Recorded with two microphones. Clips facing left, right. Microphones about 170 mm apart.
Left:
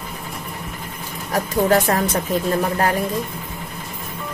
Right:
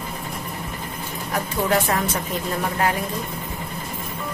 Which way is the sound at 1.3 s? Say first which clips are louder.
Left 5 dB; 35° left (ahead or behind).